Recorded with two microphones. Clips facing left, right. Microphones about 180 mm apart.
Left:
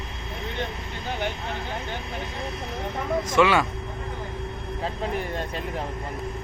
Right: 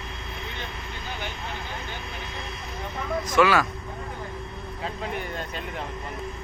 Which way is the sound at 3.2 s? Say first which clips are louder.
Even; 25° left (ahead or behind).